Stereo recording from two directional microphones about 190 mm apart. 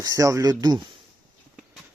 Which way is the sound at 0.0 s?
20° right (ahead or behind).